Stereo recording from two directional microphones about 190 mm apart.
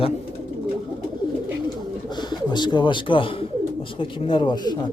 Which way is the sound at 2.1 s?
20° left (ahead or behind).